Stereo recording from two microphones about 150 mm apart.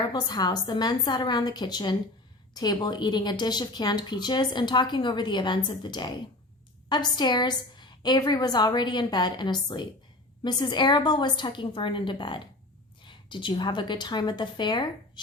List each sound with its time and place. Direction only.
0.1 s a woman's voice: 25° left (ahead or behind)